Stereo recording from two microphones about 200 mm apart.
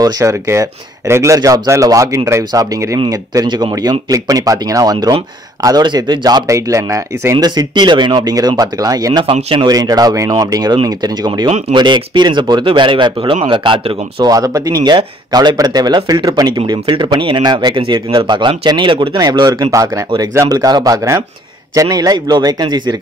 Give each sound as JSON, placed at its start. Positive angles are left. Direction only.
{"t": 0.0, "sound": "speech", "side_deg": -15}